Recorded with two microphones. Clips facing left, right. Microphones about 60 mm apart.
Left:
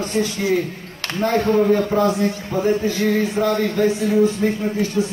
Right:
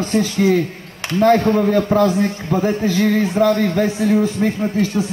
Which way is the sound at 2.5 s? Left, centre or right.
Right.